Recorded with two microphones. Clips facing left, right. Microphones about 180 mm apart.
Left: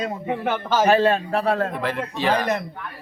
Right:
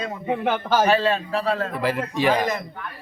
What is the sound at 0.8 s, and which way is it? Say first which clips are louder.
Speech: left 3 dB; 50° left (ahead or behind).